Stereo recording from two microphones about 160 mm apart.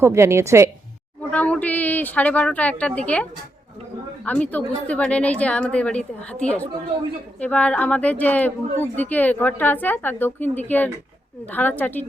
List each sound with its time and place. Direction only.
0.0 s a woman's voice: 15° right (ahead or behind)
1.3 s speech: 10° left (ahead or behind)
4.3 s a woman's voice: 10° left (ahead or behind)